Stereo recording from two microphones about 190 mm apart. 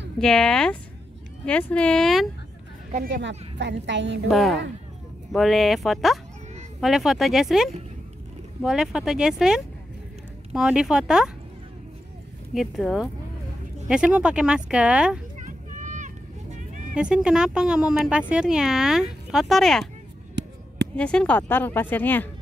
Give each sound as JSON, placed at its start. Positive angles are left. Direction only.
{"t": 0.2, "sound": "speech", "side_deg": 5}
{"t": 2.9, "sound": "a woman's voice", "side_deg": -50}
{"t": 4.3, "sound": "speech", "side_deg": 0}
{"t": 12.5, "sound": "speech", "side_deg": 0}
{"t": 15.3, "sound": "vehicle", "side_deg": -40}
{"t": 16.9, "sound": "speech", "side_deg": -5}
{"t": 20.4, "sound": "a sound", "side_deg": -65}
{"t": 20.9, "sound": "speech", "side_deg": 5}